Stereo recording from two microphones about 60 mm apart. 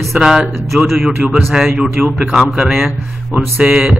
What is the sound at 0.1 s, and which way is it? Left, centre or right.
Speech, centre.